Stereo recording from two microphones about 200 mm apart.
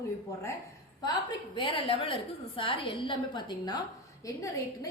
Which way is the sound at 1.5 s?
25° left (ahead or behind).